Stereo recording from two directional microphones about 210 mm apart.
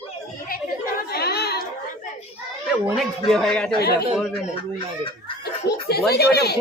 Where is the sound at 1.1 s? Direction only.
50° left (ahead or behind).